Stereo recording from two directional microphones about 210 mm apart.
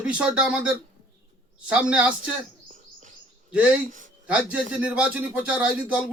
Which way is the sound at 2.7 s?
35° right (ahead or behind).